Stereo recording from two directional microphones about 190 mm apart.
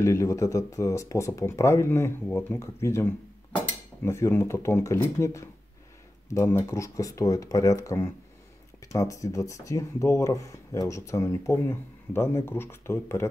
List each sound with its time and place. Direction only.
0.0 s speech: 15° left (ahead or behind)